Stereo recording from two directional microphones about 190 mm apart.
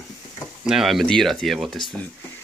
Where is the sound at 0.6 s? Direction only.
Centre (ahead or behind).